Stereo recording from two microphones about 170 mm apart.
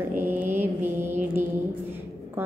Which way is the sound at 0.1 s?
10° right (ahead or behind).